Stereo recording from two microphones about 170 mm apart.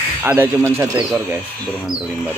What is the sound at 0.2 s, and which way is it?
Speech, 10° right (ahead or behind).